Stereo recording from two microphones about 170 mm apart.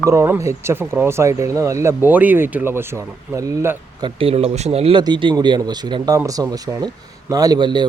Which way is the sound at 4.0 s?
30° right (ahead or behind).